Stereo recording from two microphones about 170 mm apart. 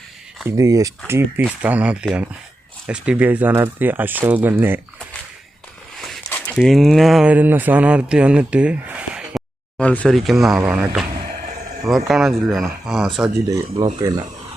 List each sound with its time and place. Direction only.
0.4 s speech: 20° right (ahead or behind)
6.0 s a sound: 5° left (ahead or behind)
6.5 s speech: 5° left (ahead or behind)
13.2 s speech: 20° right (ahead or behind)